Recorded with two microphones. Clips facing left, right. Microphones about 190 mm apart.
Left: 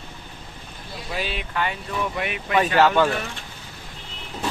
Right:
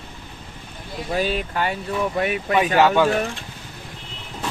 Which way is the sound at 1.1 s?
45° right (ahead or behind).